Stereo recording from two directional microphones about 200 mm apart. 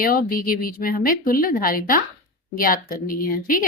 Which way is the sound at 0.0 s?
45° left (ahead or behind).